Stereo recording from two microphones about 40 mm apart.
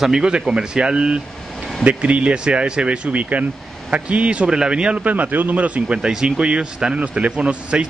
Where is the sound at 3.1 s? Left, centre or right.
Right.